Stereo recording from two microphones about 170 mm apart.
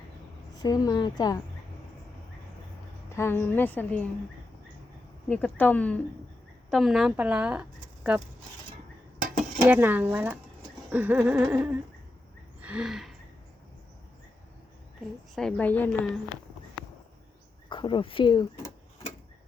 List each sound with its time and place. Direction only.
0.6 s a woman's voice: 25° left (ahead or behind)
3.1 s a woman's voice: 15° left (ahead or behind)
5.3 s a woman's voice: 10° left (ahead or behind); by 8.2 s 10° right (ahead or behind)
9.6 s a sound: 10° right (ahead or behind)
15.4 s a woman's voice: 5° left (ahead or behind)
17.7 s speech: 30° left (ahead or behind)